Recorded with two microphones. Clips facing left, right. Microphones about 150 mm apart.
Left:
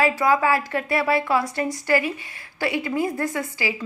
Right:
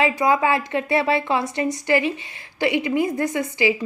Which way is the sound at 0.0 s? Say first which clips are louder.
Right 1 dB; 20° right (ahead or behind).